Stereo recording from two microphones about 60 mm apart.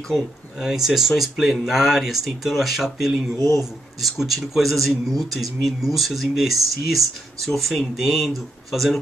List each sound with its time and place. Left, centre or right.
0.1 s speech: centre
3.3 s speech: left
4.0 s speech: centre